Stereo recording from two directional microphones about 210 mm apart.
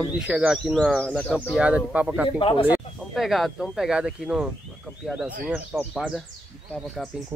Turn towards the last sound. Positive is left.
turn(degrees=0)  # may be behind; listen again after turning